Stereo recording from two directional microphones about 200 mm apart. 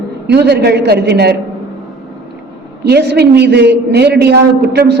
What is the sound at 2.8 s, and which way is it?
A man's voice, 55° right (ahead or behind).